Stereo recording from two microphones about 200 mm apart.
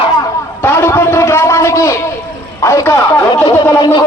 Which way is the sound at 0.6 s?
10° left (ahead or behind).